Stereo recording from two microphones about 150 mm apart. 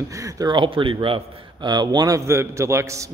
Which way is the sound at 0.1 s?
20° right (ahead or behind).